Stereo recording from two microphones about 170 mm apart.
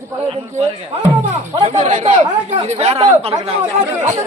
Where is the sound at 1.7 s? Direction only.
45° right (ahead or behind).